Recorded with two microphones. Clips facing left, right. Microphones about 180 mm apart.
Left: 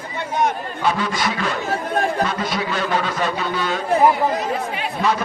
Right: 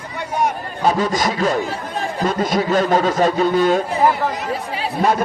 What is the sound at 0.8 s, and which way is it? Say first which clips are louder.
A man's voice: right 4 dB; 40° right (ahead or behind).